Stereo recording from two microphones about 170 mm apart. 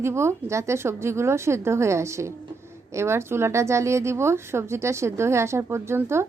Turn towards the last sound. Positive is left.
turn(degrees=-15)  # may be behind; listen again after turning